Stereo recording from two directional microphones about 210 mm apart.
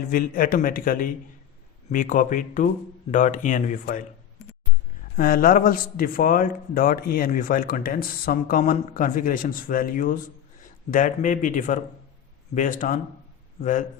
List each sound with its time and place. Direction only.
0.1 s a man's voice: 40° left (ahead or behind)
5.1 s a man's voice: 40° left (ahead or behind)